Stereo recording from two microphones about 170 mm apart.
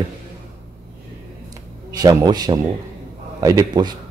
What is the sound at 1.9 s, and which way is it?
Speech, 20° right (ahead or behind).